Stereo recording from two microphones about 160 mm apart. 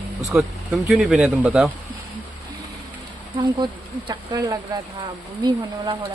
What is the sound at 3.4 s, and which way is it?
Speech, 30° right (ahead or behind).